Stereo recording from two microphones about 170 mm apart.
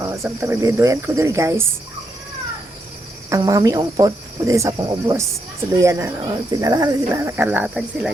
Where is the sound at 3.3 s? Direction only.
20° right (ahead or behind); by 8.1 s 5° right (ahead or behind).